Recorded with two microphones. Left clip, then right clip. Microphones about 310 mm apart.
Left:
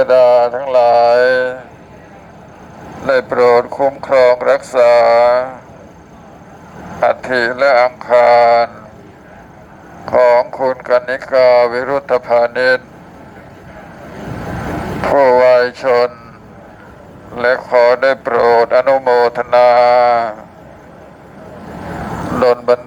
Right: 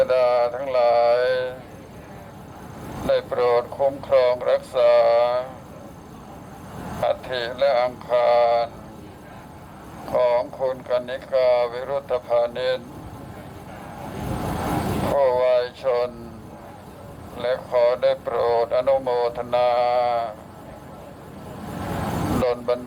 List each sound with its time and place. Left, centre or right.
0.0 s speech: left
3.1 s speech: left
7.0 s speech: left
10.1 s speech: left
15.1 s speech: left
17.3 s speech: left
22.4 s speech: left